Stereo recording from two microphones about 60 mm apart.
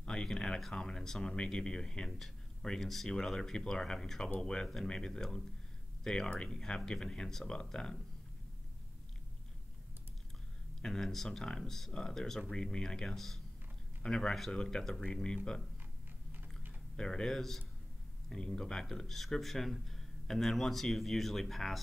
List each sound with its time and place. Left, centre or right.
0.0 s speech: centre
10.8 s speech: centre
16.3 s typing: right
16.9 s speech: centre